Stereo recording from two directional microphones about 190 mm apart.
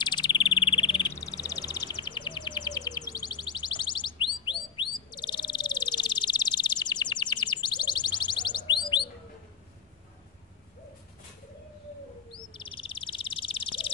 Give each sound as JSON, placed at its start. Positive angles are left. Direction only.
{"t": 0.0, "sound": "cricket", "side_deg": 25}
{"t": 1.1, "sound": "music", "side_deg": 20}
{"t": 12.3, "sound": "bird", "side_deg": 25}